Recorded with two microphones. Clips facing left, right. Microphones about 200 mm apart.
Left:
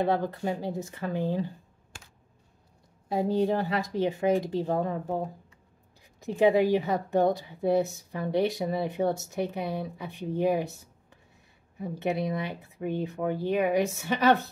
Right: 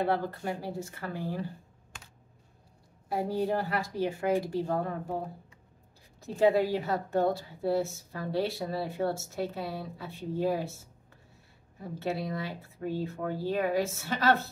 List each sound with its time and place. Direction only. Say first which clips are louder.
0.0 s speech: left 3 dB; 20° left (ahead or behind)
3.1 s speech: left 4 dB; 20° left (ahead or behind)
6.2 s a woman's voice: left 3 dB; 15° left (ahead or behind)
12.0 s a woman's voice: left 4 dB; 20° left (ahead or behind)